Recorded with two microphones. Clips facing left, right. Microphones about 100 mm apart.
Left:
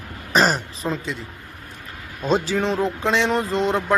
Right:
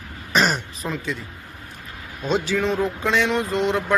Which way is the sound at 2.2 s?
35° left (ahead or behind).